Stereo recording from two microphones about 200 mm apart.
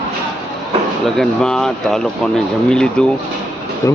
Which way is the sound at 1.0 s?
Centre (ahead or behind).